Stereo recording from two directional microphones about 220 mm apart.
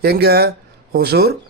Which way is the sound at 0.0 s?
45° right (ahead or behind).